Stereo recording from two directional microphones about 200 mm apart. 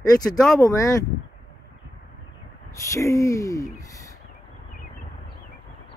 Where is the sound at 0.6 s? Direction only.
15° left (ahead or behind).